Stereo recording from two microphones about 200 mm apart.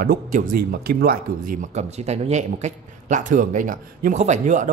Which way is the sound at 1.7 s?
35° right (ahead or behind).